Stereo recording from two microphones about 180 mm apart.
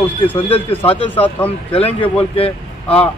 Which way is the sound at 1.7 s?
30° left (ahead or behind).